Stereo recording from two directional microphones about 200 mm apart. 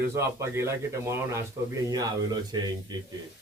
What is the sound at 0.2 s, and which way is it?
Speech, 15° right (ahead or behind).